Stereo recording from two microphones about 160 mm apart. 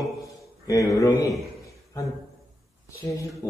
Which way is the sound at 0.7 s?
20° left (ahead or behind).